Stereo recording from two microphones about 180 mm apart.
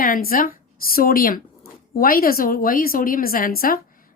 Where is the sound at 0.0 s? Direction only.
55° left (ahead or behind).